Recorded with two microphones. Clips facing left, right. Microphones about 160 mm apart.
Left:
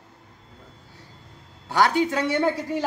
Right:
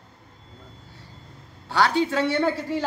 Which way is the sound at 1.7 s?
15° left (ahead or behind).